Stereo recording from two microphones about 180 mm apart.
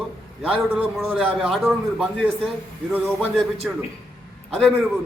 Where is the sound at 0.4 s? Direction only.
5° right (ahead or behind).